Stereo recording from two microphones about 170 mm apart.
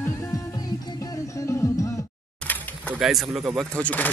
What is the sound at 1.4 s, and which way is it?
Music, 20° left (ahead or behind).